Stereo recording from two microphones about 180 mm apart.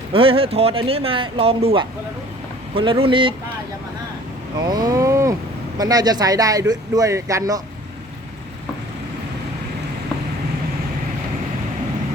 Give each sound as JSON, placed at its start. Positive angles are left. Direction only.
{"t": 0.1, "sound": "speech", "side_deg": -30}
{"t": 4.6, "sound": "speech", "side_deg": -20}